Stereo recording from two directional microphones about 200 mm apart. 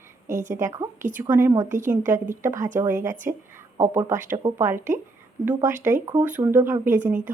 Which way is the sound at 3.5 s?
10° right (ahead or behind).